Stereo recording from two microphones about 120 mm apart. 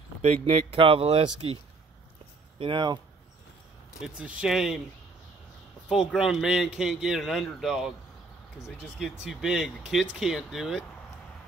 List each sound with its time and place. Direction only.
0.2 s speech: 60° right (ahead or behind)
2.6 s speech: 40° right (ahead or behind)
4.0 s a man's voice: 10° right (ahead or behind)
5.9 s a man's voice: 5° right (ahead or behind)
9.2 s a man's voice: 5° right (ahead or behind)